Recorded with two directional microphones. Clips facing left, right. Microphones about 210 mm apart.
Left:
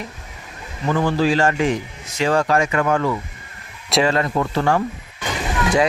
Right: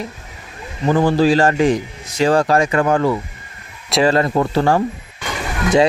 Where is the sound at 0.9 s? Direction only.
35° right (ahead or behind).